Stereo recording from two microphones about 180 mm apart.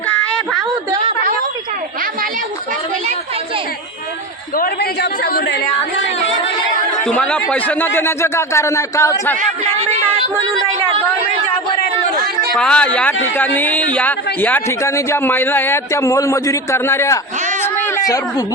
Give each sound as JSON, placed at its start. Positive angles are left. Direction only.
{"t": 4.5, "sound": "a man's voice", "side_deg": 60}
{"t": 7.1, "sound": "a man's voice", "side_deg": 5}
{"t": 9.4, "sound": "speech", "side_deg": -40}
{"t": 12.5, "sound": "a man's voice", "side_deg": 5}
{"t": 17.6, "sound": "a sound", "side_deg": 15}